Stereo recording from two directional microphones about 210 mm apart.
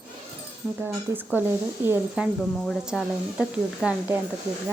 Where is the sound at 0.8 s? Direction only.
10° right (ahead or behind).